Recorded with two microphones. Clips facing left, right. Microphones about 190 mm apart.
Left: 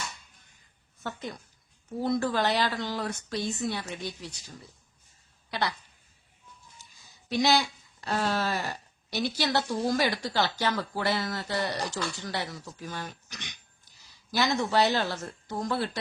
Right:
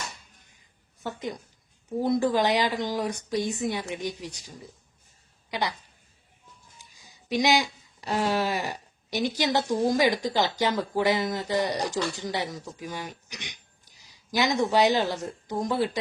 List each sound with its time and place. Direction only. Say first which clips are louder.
1.0 s a woman's voice: right 4 dB; 15° right (ahead or behind)
6.7 s speech: right 2 dB; 15° right (ahead or behind)